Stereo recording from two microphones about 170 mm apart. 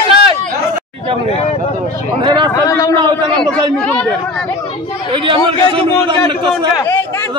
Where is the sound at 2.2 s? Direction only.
25° right (ahead or behind).